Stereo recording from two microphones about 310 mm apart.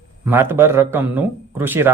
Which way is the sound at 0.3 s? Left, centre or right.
Centre.